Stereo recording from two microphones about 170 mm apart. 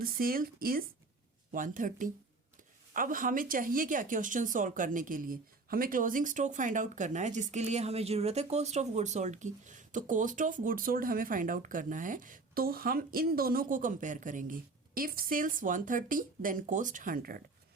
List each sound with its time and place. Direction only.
0.0 s a woman's voice: 60° right (ahead or behind)